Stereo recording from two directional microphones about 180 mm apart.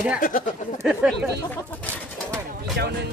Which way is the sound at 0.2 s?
50° left (ahead or behind).